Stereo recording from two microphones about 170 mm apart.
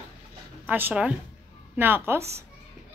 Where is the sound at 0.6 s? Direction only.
10° right (ahead or behind).